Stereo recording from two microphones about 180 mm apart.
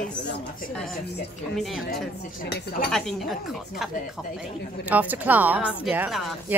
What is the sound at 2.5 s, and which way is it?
Speech, 65° left (ahead or behind).